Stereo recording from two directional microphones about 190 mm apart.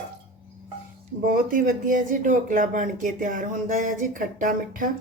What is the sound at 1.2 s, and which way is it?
Speech, 50° right (ahead or behind).